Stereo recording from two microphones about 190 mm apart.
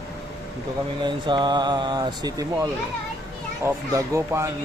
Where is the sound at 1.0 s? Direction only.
25° right (ahead or behind).